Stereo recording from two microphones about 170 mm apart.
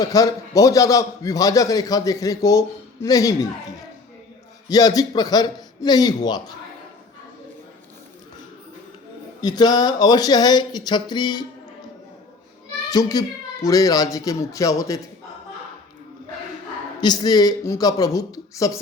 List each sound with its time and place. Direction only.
0.0 s a man's voice: 20° left (ahead or behind)
4.7 s a man's voice: 20° left (ahead or behind)
9.4 s a man's voice: 25° left (ahead or behind)
12.9 s a man's voice: 20° left (ahead or behind)
17.0 s a man's voice: 25° left (ahead or behind)